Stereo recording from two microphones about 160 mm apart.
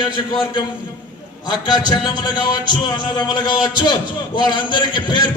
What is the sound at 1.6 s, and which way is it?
A man's voice, 25° left (ahead or behind).